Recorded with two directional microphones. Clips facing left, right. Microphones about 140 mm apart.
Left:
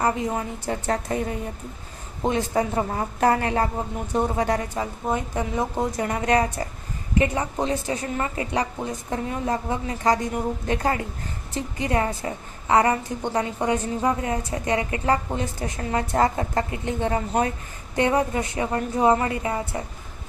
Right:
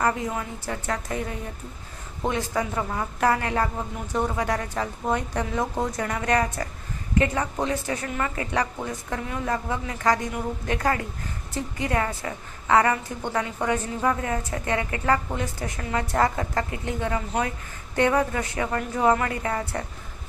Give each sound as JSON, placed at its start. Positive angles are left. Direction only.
{"t": 0.0, "sound": "a woman's voice", "side_deg": 25}
{"t": 4.7, "sound": "a woman's voice", "side_deg": 15}
{"t": 6.0, "sound": "a woman's voice", "side_deg": 30}
{"t": 17.9, "sound": "a woman's voice", "side_deg": 20}